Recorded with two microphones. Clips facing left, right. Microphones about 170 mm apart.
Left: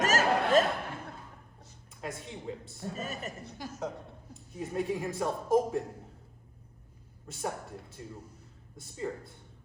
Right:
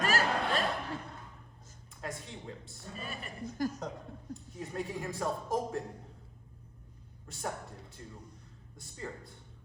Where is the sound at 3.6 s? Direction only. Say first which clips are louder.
Right 9 dB; 45° right (ahead or behind).